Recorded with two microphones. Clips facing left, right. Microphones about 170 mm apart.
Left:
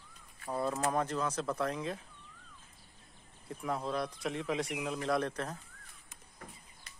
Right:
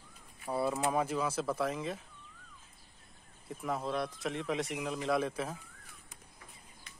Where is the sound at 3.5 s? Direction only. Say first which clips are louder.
Even; centre (ahead or behind).